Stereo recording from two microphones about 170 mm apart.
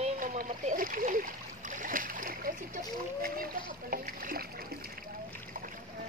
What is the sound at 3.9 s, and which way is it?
Rowboat, 55° right (ahead or behind).